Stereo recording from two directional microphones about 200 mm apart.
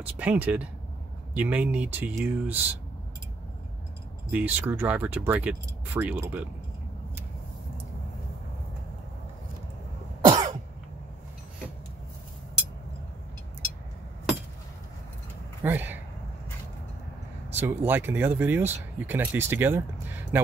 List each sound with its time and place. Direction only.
0.0 s speech: 10° right (ahead or behind)
4.3 s speech: 10° right (ahead or behind)
10.2 s cough: 35° right (ahead or behind)
15.6 s speech: 10° right (ahead or behind)
17.6 s speech: 10° right (ahead or behind)